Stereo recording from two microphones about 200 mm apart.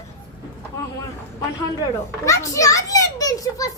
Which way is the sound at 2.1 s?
15° left (ahead or behind).